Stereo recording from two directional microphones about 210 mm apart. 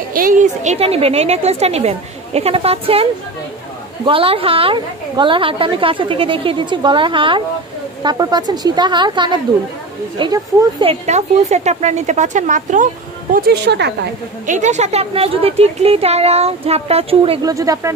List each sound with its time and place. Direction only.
0.1 s speech: 40° right (ahead or behind)
13.3 s a woman's voice: 50° right (ahead or behind)
14.4 s speech: 35° right (ahead or behind); by 17.9 s 15° right (ahead or behind)